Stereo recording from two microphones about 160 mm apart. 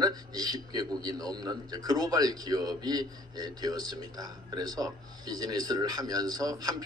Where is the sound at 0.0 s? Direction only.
25° right (ahead or behind).